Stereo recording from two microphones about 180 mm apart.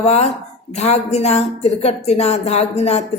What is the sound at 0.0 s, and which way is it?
A woman's voice, 35° left (ahead or behind).